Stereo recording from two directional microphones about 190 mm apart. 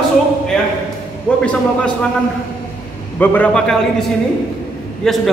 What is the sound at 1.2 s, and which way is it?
Speech, 5° left (ahead or behind).